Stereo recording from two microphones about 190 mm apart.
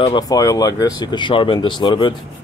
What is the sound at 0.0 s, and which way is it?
Speech, 20° left (ahead or behind).